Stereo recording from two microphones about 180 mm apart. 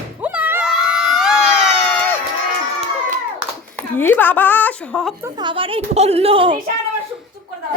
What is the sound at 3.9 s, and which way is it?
A woman's voice, 10° left (ahead or behind).